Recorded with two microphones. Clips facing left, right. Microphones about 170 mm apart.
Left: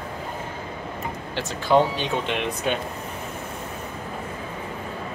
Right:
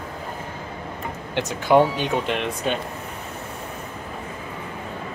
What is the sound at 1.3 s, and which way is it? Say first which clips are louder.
Speech: right 3 dB; 15° right (ahead or behind).